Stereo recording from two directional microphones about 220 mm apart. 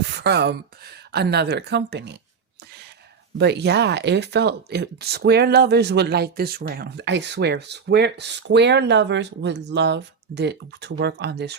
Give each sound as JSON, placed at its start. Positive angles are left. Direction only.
{"t": 0.0, "sound": "speech", "side_deg": -50}
{"t": 3.3, "sound": "speech", "side_deg": -50}